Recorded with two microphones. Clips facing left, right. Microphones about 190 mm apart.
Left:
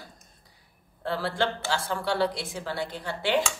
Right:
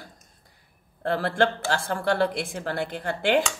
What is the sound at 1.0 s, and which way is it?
Speech, 55° right (ahead or behind).